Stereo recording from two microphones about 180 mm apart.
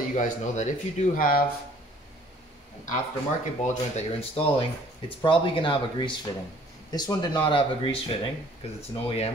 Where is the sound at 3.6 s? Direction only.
35° left (ahead or behind).